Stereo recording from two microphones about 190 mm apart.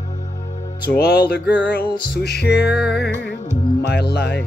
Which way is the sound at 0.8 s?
55° left (ahead or behind).